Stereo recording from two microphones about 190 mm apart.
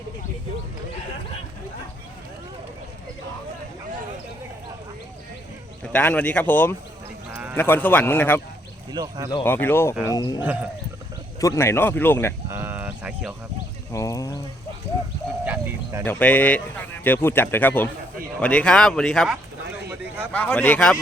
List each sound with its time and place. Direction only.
5.8 s speech: 10° left (ahead or behind)
7.3 s sheep: 10° right (ahead or behind)
7.5 s speech: 10° left (ahead or behind)
8.9 s speech: 20° right (ahead or behind)
9.4 s speech: 10° left (ahead or behind)
9.9 s speech: 10° right (ahead or behind)
10.2 s speech: 20° left (ahead or behind)
10.4 s speech: 10° right (ahead or behind)
11.3 s speech: 15° left (ahead or behind)
12.5 s a sound: 10° right (ahead or behind)
13.9 s speech: 15° left (ahead or behind)
15.4 s bird: 15° right (ahead or behind)
16.0 s speech: 10° left (ahead or behind)